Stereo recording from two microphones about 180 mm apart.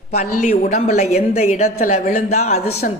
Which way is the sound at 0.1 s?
40° left (ahead or behind).